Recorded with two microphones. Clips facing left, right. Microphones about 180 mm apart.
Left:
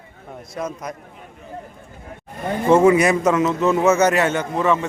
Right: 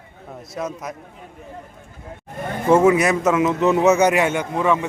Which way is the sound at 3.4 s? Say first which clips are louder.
Right 1 dB; 15° right (ahead or behind).